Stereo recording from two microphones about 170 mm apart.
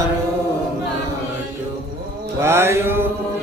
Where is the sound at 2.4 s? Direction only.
15° right (ahead or behind).